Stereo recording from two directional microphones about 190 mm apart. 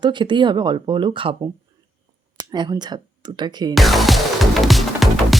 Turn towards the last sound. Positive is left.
turn(degrees=0)  # may be behind; listen again after turning